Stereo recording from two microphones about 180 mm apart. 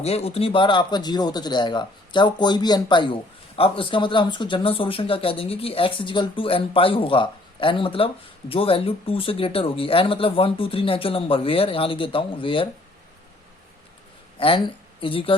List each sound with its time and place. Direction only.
0.0 s speech: 35° left (ahead or behind)
14.3 s speech: 30° left (ahead or behind)